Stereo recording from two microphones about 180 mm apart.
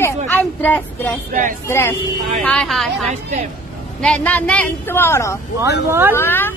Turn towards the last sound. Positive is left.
turn(degrees=10)  # may be behind; listen again after turning